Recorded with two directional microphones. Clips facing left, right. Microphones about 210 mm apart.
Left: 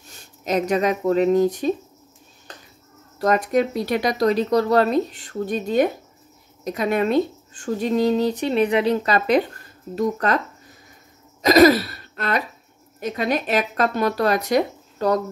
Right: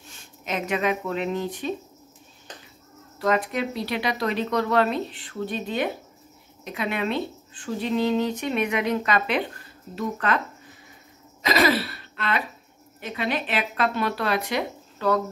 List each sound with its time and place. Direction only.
0.1 s speech: 40° left (ahead or behind)
3.2 s speech: 45° left (ahead or behind)
11.4 s throat clearing: 45° left (ahead or behind)
13.0 s speech: 40° left (ahead or behind)